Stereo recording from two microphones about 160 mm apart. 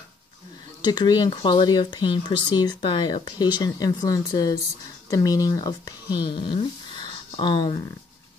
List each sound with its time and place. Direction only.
0.8 s speech: 25° left (ahead or behind)